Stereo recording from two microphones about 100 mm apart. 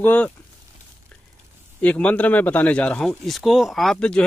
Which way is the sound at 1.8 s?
15° left (ahead or behind).